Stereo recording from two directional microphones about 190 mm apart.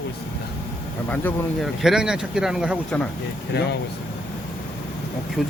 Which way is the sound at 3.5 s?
60° left (ahead or behind).